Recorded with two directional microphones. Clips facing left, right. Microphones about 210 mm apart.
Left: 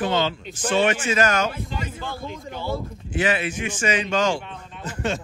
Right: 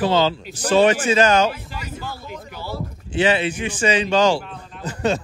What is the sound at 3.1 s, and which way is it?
Speech, 30° right (ahead or behind).